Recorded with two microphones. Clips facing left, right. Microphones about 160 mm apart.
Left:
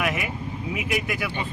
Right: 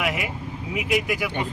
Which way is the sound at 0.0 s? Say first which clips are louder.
Even; 10° right (ahead or behind).